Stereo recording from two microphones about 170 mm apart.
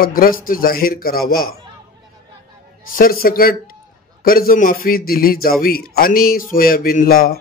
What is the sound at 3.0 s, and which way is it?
A man's voice, 60° left (ahead or behind).